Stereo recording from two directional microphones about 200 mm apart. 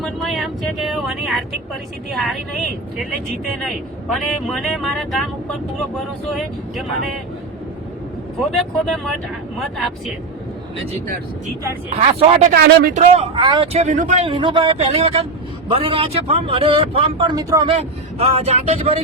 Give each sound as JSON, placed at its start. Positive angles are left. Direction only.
{"t": 0.0, "sound": "speech", "side_deg": 0}
{"t": 4.1, "sound": "speech", "side_deg": 0}
{"t": 8.4, "sound": "speech", "side_deg": 0}
{"t": 11.9, "sound": "speech", "side_deg": -35}
{"t": 12.5, "sound": "speech", "side_deg": -45}
{"t": 13.1, "sound": "speech", "side_deg": -25}
{"t": 13.7, "sound": "speech", "side_deg": -35}
{"t": 14.3, "sound": "speech", "side_deg": -25}
{"t": 18.2, "sound": "speech", "side_deg": -30}